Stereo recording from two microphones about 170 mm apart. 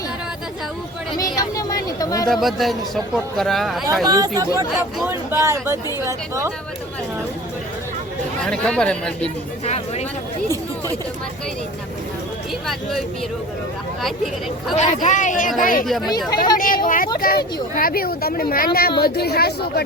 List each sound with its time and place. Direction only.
1.2 s speech: 20° left (ahead or behind)
2.3 s a man's voice: centre (ahead or behind)
4.0 s speech: 20° right (ahead or behind)
8.4 s a man's voice: 5° left (ahead or behind)
12.6 s a man's voice: centre (ahead or behind)
14.8 s speech: 45° left (ahead or behind); by 19.8 s 70° left (ahead or behind)